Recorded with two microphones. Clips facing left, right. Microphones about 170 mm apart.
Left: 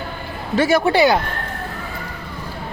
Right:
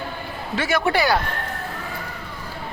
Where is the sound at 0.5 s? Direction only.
35° left (ahead or behind).